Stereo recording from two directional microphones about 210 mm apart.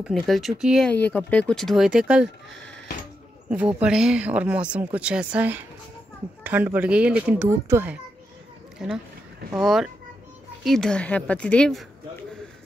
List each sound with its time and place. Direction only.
0.0 s speech: centre (ahead or behind)
3.4 s speech: 5° right (ahead or behind)